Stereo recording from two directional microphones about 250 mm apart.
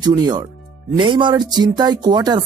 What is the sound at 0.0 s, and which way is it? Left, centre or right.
Speech, centre.